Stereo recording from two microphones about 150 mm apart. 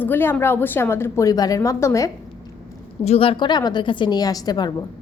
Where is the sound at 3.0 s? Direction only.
40° left (ahead or behind).